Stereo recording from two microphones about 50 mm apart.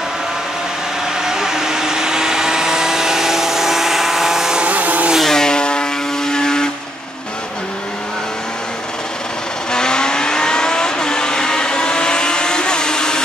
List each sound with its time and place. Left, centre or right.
1.2 s vehicle: centre
4.6 s vehicle: right
5.2 s vehicle: centre
9.7 s vehicle: centre